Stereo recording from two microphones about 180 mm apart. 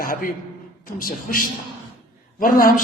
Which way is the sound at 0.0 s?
50° left (ahead or behind).